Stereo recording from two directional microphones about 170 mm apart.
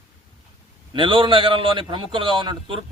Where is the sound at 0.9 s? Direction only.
30° right (ahead or behind).